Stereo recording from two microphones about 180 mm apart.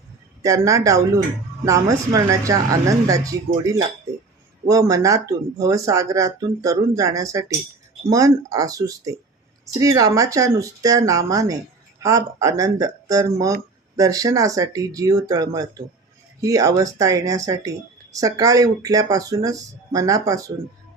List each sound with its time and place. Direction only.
0.4 s speech: 15° right (ahead or behind)
4.6 s speech: 20° right (ahead or behind)